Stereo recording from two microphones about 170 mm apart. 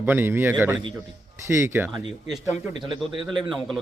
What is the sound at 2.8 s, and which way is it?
A man's voice, centre (ahead or behind).